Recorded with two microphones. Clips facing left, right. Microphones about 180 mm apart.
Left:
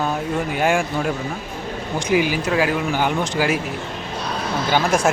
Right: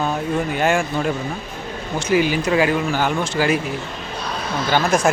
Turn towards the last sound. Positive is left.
turn(degrees=10)  # may be behind; listen again after turning